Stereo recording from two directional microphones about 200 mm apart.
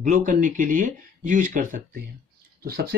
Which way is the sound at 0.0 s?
40° right (ahead or behind).